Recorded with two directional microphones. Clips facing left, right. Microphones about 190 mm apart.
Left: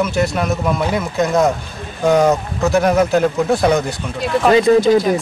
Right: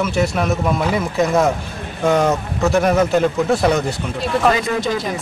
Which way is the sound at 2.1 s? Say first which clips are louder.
Left 3 dB; centre (ahead or behind).